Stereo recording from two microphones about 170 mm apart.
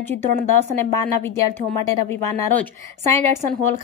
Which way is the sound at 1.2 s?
15° left (ahead or behind).